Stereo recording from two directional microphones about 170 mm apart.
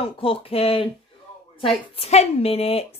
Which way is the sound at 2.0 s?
40° left (ahead or behind).